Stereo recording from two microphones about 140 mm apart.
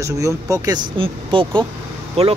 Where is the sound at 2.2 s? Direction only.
50° right (ahead or behind).